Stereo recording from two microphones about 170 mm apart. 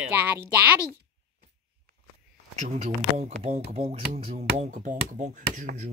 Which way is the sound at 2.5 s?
40° right (ahead or behind).